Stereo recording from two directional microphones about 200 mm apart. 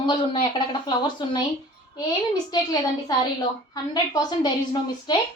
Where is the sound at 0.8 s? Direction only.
20° left (ahead or behind).